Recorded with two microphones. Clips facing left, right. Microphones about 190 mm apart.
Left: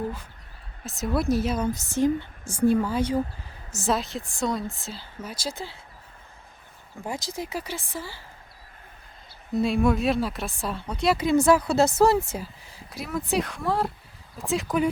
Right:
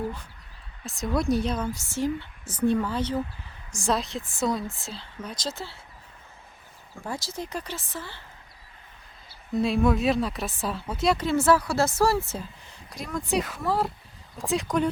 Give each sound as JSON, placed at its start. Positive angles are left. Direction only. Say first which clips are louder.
{"t": 0.9, "sound": "speech", "louder": "left 1 dB", "side_deg": 0}
{"t": 1.6, "sound": "speech", "louder": "left 5 dB", "side_deg": 20}
{"t": 7.0, "sound": "speech", "louder": "left 1 dB", "side_deg": 15}
{"t": 9.5, "sound": "speech", "louder": "left 1 dB", "side_deg": 0}
{"t": 11.2, "sound": "speech", "louder": "left 5 dB", "side_deg": 15}